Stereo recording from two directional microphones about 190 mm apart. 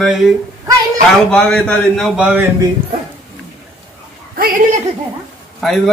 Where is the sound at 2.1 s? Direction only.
5° right (ahead or behind).